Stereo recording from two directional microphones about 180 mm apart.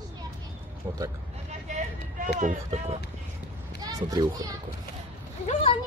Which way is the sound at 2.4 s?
40° right (ahead or behind).